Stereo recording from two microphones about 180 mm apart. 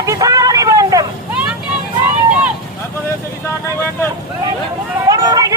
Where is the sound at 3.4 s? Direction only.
15° left (ahead or behind).